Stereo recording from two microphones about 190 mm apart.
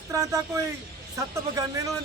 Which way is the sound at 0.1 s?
15° right (ahead or behind).